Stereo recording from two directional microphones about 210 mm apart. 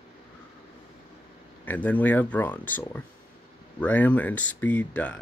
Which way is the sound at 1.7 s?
10° left (ahead or behind).